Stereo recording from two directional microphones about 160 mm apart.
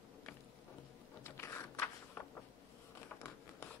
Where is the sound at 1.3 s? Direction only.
15° left (ahead or behind).